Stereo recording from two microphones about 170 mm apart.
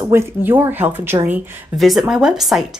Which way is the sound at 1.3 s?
Centre (ahead or behind).